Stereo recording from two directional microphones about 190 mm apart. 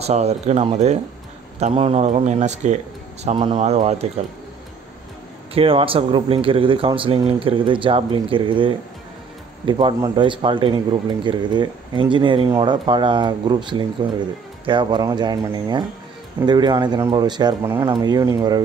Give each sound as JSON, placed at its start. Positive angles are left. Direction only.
{"t": 0.0, "sound": "speech", "side_deg": -35}
{"t": 3.3, "sound": "speech", "side_deg": -25}
{"t": 5.5, "sound": "speech", "side_deg": -30}